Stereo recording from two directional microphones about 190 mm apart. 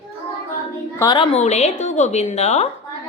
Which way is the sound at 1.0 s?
25° left (ahead or behind).